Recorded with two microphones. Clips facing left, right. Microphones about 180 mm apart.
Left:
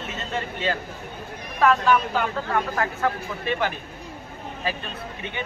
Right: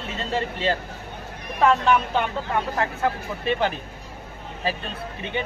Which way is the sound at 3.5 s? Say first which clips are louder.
Right 2 dB; 30° right (ahead or behind).